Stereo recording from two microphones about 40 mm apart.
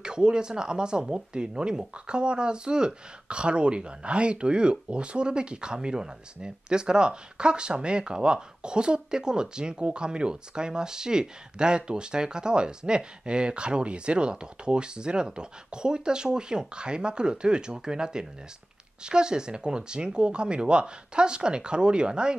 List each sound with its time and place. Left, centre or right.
0.0 s speech: right